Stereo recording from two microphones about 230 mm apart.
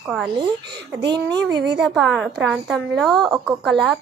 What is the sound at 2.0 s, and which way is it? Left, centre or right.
Speech, centre.